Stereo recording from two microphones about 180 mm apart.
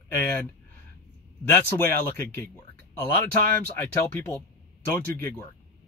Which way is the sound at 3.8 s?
15° left (ahead or behind).